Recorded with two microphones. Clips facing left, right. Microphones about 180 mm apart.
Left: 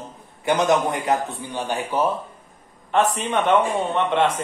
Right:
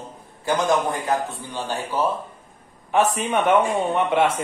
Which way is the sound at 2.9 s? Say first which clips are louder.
Even; 10° right (ahead or behind).